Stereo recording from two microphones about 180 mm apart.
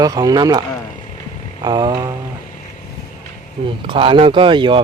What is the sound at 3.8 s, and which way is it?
Speech, 30° right (ahead or behind).